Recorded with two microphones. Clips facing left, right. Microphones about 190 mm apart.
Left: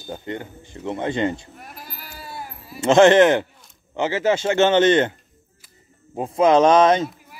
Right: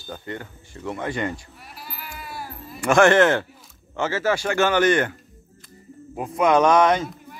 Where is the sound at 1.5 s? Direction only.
50° left (ahead or behind); by 2.5 s 25° left (ahead or behind).